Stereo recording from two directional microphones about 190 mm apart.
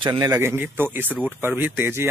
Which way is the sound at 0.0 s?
25° right (ahead or behind).